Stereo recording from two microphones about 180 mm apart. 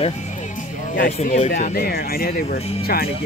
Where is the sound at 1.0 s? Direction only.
45° left (ahead or behind).